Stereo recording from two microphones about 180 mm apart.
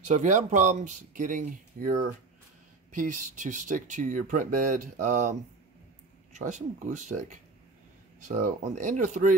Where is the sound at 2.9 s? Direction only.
45° right (ahead or behind).